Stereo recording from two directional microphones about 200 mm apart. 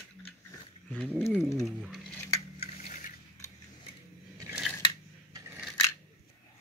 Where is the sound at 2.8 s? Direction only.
40° left (ahead or behind).